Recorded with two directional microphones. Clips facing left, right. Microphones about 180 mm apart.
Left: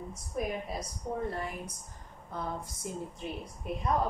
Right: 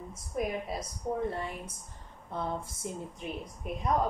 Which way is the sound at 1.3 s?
25° right (ahead or behind).